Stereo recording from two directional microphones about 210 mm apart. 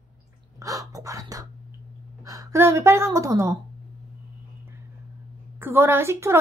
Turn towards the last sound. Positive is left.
turn(degrees=-10)  # may be behind; listen again after turning